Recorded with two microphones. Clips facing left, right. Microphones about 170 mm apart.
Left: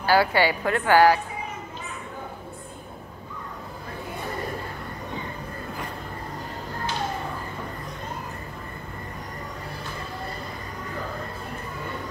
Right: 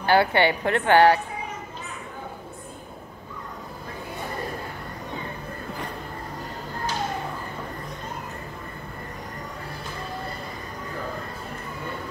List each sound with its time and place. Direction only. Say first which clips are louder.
0.0 s a woman's voice: right 1 dB; 25° right (ahead or behind)